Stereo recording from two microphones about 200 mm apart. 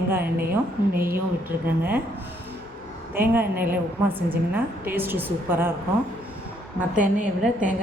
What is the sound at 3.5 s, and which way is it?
A woman's voice, 10° right (ahead or behind).